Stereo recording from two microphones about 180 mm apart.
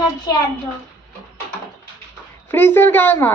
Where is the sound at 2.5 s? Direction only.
10° left (ahead or behind).